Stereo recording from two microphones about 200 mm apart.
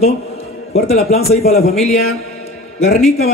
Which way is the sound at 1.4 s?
50° left (ahead or behind).